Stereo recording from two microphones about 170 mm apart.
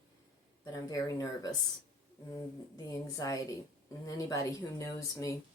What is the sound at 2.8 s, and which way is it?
Speech, 20° left (ahead or behind).